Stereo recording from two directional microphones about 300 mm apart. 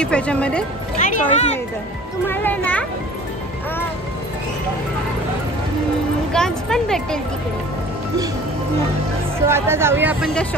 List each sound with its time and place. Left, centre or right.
0.0 s speech: centre
0.9 s speech: left
2.2 s speech: centre
6.3 s speech: centre
9.5 s speech: centre